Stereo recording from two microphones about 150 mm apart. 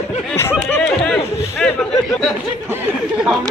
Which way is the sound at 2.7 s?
15° right (ahead or behind).